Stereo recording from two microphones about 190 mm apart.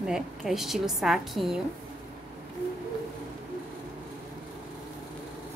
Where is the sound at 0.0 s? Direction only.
Centre (ahead or behind).